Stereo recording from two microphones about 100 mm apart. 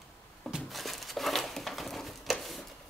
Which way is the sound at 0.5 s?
Centre (ahead or behind).